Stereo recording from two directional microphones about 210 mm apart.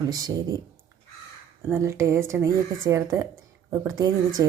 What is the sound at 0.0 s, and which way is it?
Speech, 20° right (ahead or behind).